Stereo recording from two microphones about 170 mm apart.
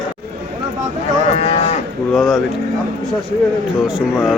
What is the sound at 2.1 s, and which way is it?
Speech, centre (ahead or behind).